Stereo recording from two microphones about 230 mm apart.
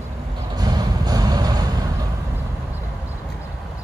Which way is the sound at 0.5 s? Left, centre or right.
Centre.